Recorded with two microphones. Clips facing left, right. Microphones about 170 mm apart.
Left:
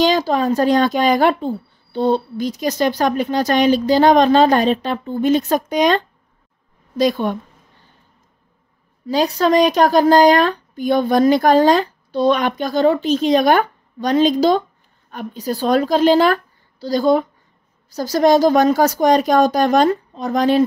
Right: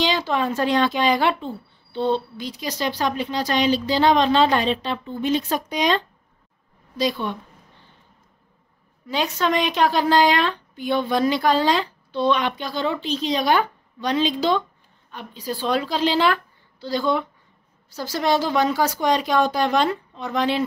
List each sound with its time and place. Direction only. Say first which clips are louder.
0.0 s speech: left 6 dB; 40° left (ahead or behind)
9.0 s speech: left 7 dB; 35° left (ahead or behind)